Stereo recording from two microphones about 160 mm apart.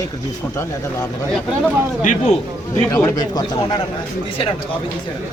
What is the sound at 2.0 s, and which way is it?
Speech, 45° left (ahead or behind).